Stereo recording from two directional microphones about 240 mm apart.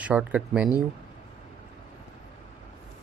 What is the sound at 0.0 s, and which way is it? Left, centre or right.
Speech, centre.